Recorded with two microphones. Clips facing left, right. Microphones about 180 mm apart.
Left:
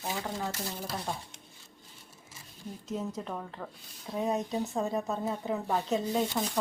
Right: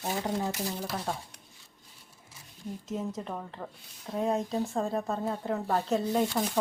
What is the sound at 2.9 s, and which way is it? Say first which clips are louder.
Speech: even; centre (ahead or behind).